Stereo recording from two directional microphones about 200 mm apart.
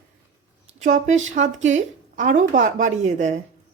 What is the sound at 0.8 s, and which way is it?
A woman's voice, 35° right (ahead or behind).